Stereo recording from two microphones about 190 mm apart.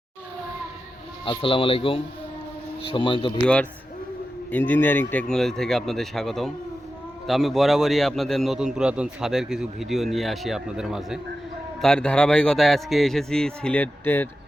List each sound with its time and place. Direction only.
1.2 s speech: 30° left (ahead or behind)
3.4 s a man's voice: 5° left (ahead or behind)